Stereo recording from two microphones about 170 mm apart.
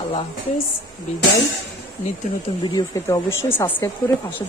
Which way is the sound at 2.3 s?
50° left (ahead or behind).